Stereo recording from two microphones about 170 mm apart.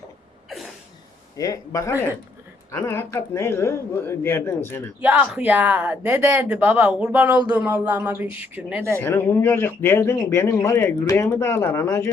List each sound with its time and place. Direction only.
1.4 s a man's voice: 20° left (ahead or behind)
5.0 s speech: 5° right (ahead or behind)
9.0 s a man's voice: 10° left (ahead or behind)